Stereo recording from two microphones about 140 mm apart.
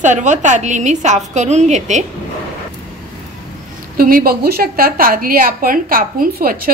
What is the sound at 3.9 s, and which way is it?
A woman's voice, 90° right.